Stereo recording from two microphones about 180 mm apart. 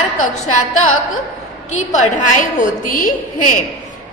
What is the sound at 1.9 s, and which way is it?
A woman's voice, 45° left (ahead or behind).